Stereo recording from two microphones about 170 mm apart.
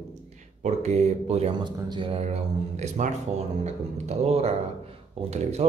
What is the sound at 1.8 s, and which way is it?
A man's voice, 30° right (ahead or behind).